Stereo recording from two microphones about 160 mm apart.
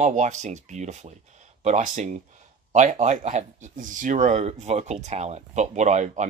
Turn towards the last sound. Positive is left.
turn(degrees=-45)  # may be behind; listen again after turning